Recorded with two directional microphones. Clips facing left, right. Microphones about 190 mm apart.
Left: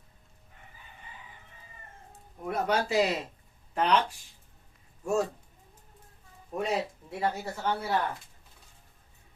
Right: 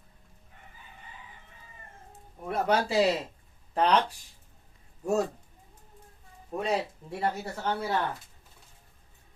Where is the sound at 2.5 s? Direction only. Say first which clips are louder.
Right 1 dB; 30° right (ahead or behind).